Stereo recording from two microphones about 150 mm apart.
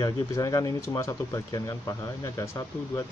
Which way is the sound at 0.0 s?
20° left (ahead or behind).